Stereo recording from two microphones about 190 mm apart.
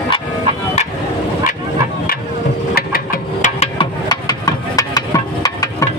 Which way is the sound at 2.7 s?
50° left (ahead or behind).